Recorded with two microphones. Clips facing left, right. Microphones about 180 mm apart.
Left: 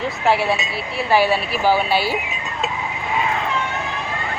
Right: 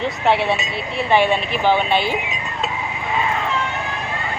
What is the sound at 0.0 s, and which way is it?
Speech, centre (ahead or behind).